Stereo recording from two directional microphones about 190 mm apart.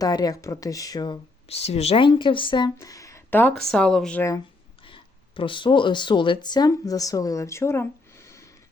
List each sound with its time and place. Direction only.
0.0 s speech: 20° left (ahead or behind); by 4.2 s 5° left (ahead or behind)
4.9 s speech: 25° left (ahead or behind)